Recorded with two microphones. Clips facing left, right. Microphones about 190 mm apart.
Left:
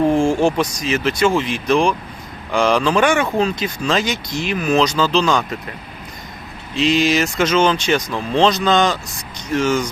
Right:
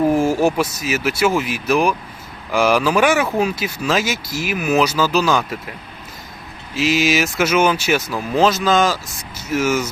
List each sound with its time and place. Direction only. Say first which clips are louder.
0.0 s speech: left 1 dB; 5° right (ahead or behind)
6.7 s speech: left 1 dB; 5° right (ahead or behind)